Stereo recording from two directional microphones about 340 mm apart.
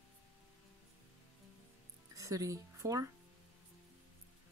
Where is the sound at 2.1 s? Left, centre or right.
Centre.